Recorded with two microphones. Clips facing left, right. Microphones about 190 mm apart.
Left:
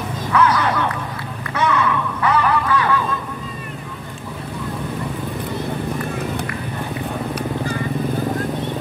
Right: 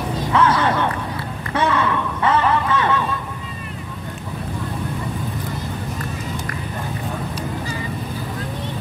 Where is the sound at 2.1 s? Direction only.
25° right (ahead or behind).